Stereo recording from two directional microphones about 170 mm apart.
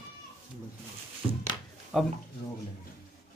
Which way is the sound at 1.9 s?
5° right (ahead or behind).